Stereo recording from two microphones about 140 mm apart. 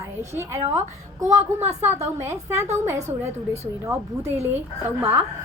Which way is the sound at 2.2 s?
20° right (ahead or behind).